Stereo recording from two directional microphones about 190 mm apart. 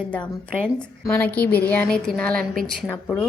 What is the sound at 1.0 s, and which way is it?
A woman's voice, 10° left (ahead or behind).